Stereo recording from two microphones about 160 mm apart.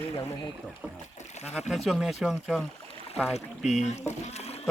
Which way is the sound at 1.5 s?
Centre (ahead or behind).